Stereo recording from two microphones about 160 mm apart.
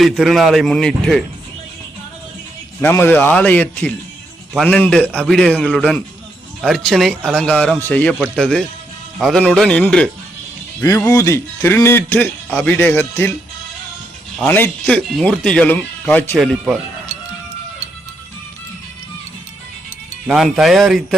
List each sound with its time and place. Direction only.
0.0 s speech: centre (ahead or behind)
2.8 s a man's voice: 15° left (ahead or behind)
10.8 s a man's voice: 20° left (ahead or behind)
14.3 s a man's voice: 10° left (ahead or behind)
16.4 s speech: centre (ahead or behind)
20.2 s speech: centre (ahead or behind)